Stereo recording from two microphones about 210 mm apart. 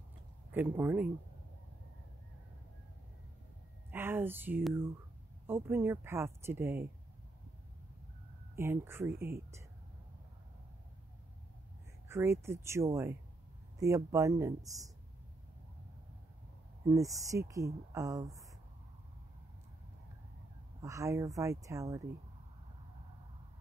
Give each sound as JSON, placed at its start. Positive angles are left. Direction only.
{"t": 0.5, "sound": "speech", "side_deg": -10}
{"t": 3.9, "sound": "speech", "side_deg": -10}
{"t": 8.5, "sound": "speech", "side_deg": -10}
{"t": 12.1, "sound": "speech", "side_deg": -10}
{"t": 16.8, "sound": "speech", "side_deg": -15}
{"t": 20.8, "sound": "speech", "side_deg": -15}